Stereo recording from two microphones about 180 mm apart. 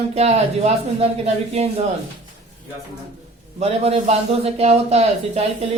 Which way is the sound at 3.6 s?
35° right (ahead or behind).